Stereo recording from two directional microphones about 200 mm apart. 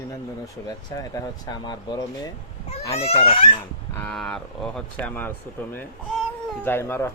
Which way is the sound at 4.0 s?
5° left (ahead or behind).